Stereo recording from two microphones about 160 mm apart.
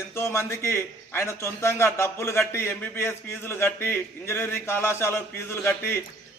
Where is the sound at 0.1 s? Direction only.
15° left (ahead or behind).